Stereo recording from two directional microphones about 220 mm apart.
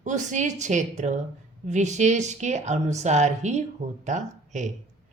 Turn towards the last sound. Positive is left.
turn(degrees=-35)  # may be behind; listen again after turning